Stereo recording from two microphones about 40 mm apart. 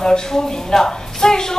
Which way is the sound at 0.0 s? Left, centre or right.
Centre.